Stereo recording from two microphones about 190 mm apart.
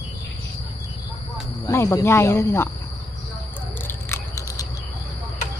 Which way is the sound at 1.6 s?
15° left (ahead or behind).